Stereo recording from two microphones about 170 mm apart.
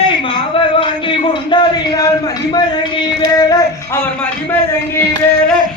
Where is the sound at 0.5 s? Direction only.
30° left (ahead or behind).